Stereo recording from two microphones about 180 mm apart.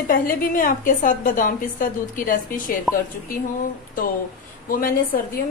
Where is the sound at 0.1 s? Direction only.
50° left (ahead or behind).